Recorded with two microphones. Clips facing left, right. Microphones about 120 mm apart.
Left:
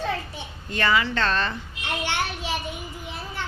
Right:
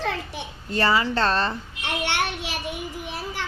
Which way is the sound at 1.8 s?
70° right (ahead or behind).